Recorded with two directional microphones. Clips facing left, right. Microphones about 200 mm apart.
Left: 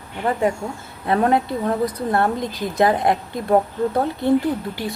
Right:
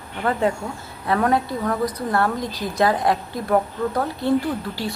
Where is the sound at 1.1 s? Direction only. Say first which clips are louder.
Left 2 dB; 25° left (ahead or behind).